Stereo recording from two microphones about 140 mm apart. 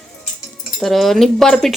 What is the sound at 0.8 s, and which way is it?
Speech, centre (ahead or behind).